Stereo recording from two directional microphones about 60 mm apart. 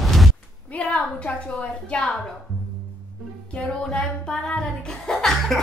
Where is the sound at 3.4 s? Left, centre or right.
Centre.